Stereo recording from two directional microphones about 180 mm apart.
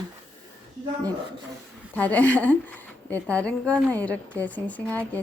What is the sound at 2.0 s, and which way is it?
A woman's voice, 10° left (ahead or behind).